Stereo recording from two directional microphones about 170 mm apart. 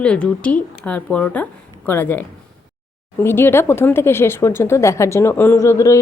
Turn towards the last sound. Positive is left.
turn(degrees=15)  # may be behind; listen again after turning